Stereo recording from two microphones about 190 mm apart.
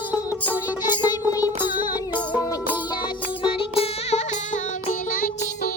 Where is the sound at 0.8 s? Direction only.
20° left (ahead or behind).